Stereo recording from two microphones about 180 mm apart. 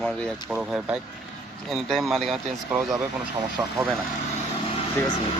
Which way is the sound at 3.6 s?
15° right (ahead or behind).